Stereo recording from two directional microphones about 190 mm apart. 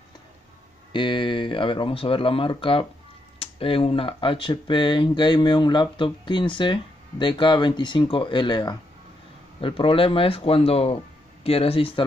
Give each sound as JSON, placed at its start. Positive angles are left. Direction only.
{"t": 0.9, "sound": "speech", "side_deg": 25}